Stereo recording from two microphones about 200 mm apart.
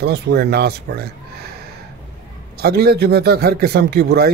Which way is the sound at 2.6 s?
50° right (ahead or behind).